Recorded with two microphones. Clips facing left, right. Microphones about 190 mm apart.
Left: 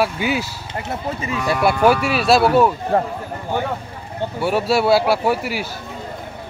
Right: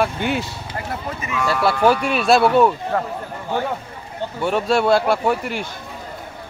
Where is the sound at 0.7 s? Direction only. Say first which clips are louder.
Left 4 dB; 30° left (ahead or behind).